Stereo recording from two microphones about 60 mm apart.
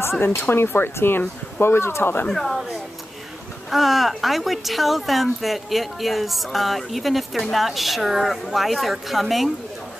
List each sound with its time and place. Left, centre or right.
0.3 s speech: left
2.2 s speech: centre
3.7 s speech: centre